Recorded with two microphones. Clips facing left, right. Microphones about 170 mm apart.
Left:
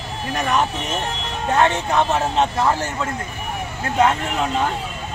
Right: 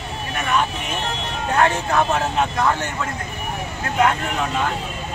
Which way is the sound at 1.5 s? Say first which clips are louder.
Left 1 dB; 20° left (ahead or behind).